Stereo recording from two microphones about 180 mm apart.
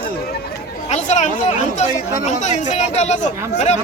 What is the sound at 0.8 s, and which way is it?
Speech, 40° left (ahead or behind).